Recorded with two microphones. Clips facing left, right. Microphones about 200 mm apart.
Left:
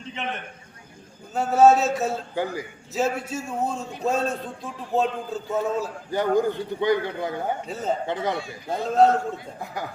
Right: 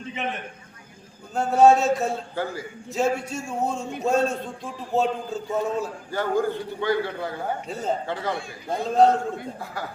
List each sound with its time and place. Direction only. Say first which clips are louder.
1.3 s a man's voice: even; 5° left (ahead or behind)
2.3 s a man's voice: left 2 dB; 15° left (ahead or behind)
2.9 s a man's voice: right 1 dB; centre (ahead or behind)
6.1 s a man's voice: left 3 dB; 15° left (ahead or behind)
7.7 s a man's voice: right 1 dB; centre (ahead or behind)
8.0 s a man's voice: left 2 dB; 20° left (ahead or behind)
8.7 s a man's voice: even; centre (ahead or behind)